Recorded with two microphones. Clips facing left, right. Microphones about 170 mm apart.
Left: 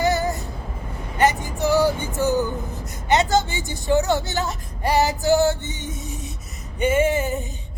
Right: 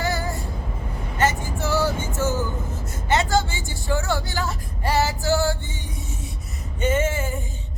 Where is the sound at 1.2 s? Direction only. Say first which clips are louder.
Left 4 dB; 15° left (ahead or behind).